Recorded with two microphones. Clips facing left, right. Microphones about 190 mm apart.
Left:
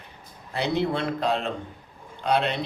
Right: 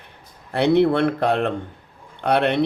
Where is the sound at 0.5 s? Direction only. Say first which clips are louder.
Right 9 dB; 60° right (ahead or behind).